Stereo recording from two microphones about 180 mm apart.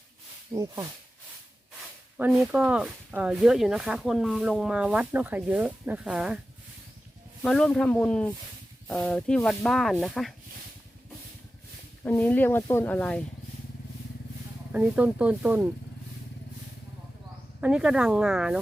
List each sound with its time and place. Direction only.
0.5 s speech: 20° right (ahead or behind)
2.1 s speech: 5° right (ahead or behind)
7.4 s speech: 5° left (ahead or behind)
12.0 s speech: 10° left (ahead or behind)
14.7 s speech: 10° right (ahead or behind)
17.6 s speech: 5° right (ahead or behind)